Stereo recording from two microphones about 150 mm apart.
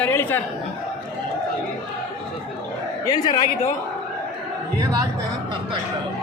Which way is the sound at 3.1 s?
25° left (ahead or behind).